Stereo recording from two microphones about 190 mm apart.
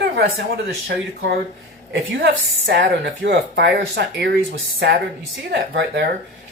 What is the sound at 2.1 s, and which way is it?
Speech, 75° right (ahead or behind).